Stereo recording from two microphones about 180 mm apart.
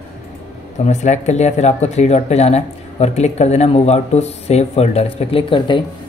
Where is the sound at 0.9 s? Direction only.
40° left (ahead or behind).